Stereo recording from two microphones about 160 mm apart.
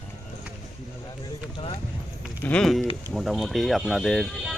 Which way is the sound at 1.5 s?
35° left (ahead or behind).